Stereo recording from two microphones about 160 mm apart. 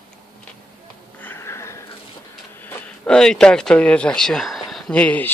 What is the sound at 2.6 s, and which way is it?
Speech, 10° left (ahead or behind).